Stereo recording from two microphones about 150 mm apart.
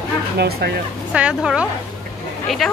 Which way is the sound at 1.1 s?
5° right (ahead or behind).